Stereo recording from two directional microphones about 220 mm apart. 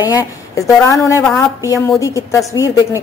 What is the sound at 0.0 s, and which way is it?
A woman's voice, 15° left (ahead or behind).